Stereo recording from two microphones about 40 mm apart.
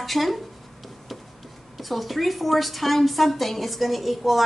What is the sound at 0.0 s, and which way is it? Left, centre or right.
Speech, centre.